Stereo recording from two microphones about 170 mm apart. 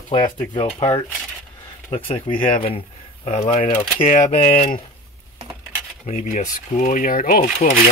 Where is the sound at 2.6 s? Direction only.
35° left (ahead or behind).